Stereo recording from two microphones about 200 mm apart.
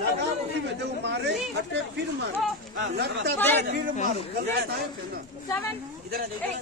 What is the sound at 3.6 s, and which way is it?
A man's voice, 45° right (ahead or behind).